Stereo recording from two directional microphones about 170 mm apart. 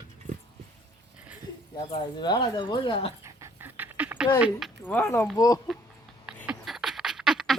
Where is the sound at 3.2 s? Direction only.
15° right (ahead or behind).